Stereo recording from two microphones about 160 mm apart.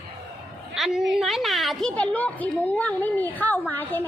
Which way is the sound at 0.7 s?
Centre (ahead or behind).